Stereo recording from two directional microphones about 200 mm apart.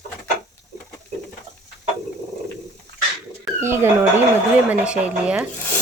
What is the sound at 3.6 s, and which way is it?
Speech, 10° right (ahead or behind).